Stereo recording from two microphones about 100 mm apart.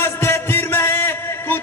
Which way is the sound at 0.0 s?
25° left (ahead or behind).